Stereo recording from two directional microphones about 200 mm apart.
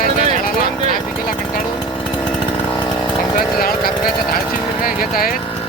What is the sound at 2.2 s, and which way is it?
Chainsaw, 25° left (ahead or behind).